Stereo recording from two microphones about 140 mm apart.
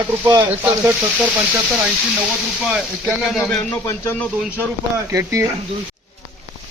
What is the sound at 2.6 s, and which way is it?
Speech, 5° right (ahead or behind).